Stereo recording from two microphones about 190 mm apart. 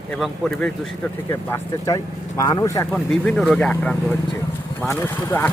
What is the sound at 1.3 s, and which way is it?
Speech, 15° left (ahead or behind).